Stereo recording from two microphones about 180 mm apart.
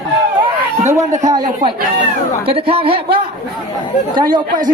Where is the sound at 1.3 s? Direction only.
20° right (ahead or behind).